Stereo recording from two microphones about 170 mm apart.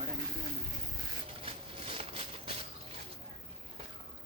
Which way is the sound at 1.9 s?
35° right (ahead or behind).